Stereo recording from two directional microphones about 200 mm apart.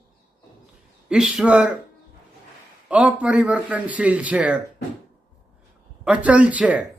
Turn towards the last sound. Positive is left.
turn(degrees=-5)  # may be behind; listen again after turning